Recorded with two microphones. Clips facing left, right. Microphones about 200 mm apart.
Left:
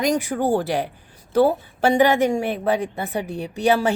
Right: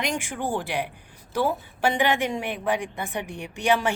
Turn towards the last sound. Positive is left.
turn(degrees=40)  # may be behind; listen again after turning